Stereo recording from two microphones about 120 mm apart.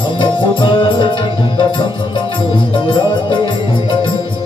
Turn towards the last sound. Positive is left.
turn(degrees=45)  # may be behind; listen again after turning